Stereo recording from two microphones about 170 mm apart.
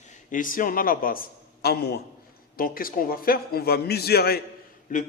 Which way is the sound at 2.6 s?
55° left (ahead or behind).